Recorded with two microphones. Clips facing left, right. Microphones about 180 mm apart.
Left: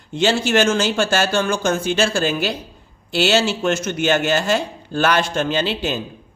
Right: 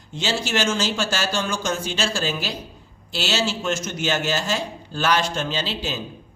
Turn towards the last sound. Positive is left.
turn(degrees=60)  # may be behind; listen again after turning